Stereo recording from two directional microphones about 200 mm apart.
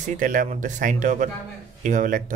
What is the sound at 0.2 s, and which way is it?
Speech, 40° right (ahead or behind).